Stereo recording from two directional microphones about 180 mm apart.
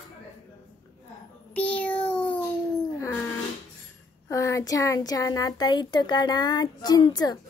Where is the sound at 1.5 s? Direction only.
10° left (ahead or behind).